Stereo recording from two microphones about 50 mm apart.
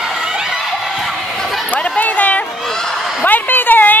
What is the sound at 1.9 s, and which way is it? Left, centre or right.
Run, left.